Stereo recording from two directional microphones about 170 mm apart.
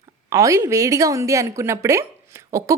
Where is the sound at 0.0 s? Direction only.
20° right (ahead or behind).